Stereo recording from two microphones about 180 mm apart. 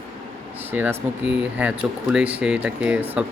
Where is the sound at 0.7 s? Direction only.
10° right (ahead or behind).